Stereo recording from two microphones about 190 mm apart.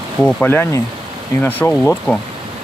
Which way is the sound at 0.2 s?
5° left (ahead or behind).